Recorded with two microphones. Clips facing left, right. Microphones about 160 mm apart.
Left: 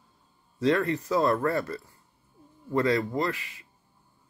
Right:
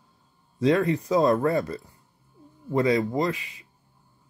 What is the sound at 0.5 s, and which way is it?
Speech, 15° right (ahead or behind).